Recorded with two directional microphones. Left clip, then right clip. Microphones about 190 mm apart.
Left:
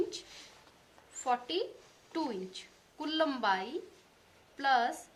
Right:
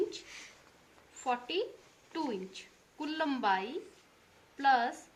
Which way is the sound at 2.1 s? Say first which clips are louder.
Left 1 dB; 45° left (ahead or behind).